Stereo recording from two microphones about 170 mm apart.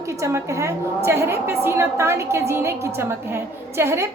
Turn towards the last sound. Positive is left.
turn(degrees=-15)  # may be behind; listen again after turning